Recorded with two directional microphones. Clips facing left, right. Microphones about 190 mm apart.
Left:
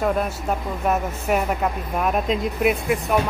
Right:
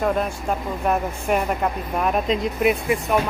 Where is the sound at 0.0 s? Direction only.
5° left (ahead or behind).